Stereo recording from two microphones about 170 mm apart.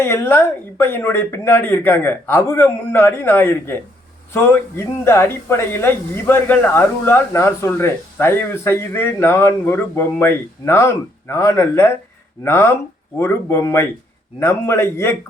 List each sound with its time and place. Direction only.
0.0 s speech: 15° left (ahead or behind)